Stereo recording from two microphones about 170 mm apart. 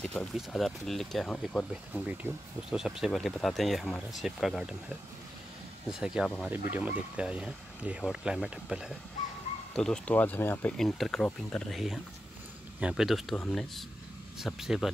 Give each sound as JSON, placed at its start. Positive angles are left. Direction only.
{"t": 0.0, "sound": "speech", "side_deg": 5}
{"t": 2.2, "sound": "speech", "side_deg": -15}
{"t": 2.7, "sound": "speech", "side_deg": 0}
{"t": 5.9, "sound": "speech", "side_deg": -5}